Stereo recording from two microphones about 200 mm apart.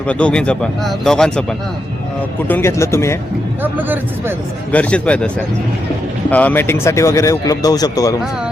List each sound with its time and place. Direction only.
0.1 s speech: 5° left (ahead or behind)
2.5 s speech: 10° left (ahead or behind)
3.6 s a man's voice: 10° right (ahead or behind)
4.7 s speech: 5° left (ahead or behind)
6.3 s speech: 10° left (ahead or behind)